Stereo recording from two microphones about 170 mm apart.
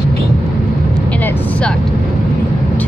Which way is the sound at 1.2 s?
10° left (ahead or behind).